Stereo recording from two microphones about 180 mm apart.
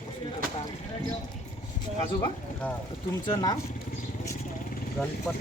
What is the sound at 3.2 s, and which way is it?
Speech, 25° left (ahead or behind).